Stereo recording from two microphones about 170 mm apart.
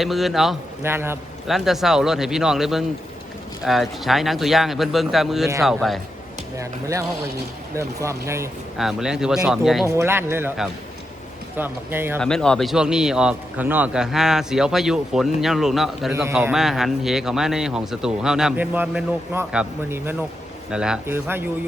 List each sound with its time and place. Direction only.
0.0 s a man's voice: centre (ahead or behind)
0.8 s speech: 15° right (ahead or behind)
1.5 s a man's voice: centre (ahead or behind)
6.6 s speech: 15° right (ahead or behind)
8.8 s a man's voice: 5° right (ahead or behind)
9.8 s speech: 15° right (ahead or behind)
11.5 s speech: 10° right (ahead or behind)
12.2 s a man's voice: 5° left (ahead or behind); by 21.5 s 10° right (ahead or behind)